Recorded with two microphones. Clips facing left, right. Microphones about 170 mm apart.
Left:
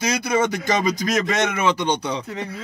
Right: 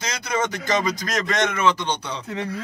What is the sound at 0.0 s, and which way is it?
Speech, 10° left (ahead or behind).